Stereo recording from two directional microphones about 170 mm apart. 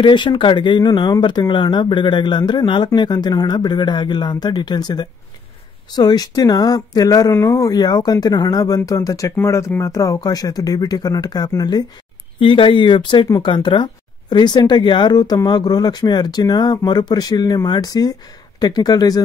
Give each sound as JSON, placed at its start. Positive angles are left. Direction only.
{"t": 0.0, "sound": "speech", "side_deg": 25}